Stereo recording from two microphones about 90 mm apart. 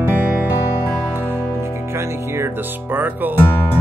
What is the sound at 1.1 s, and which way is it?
Speech, 25° right (ahead or behind).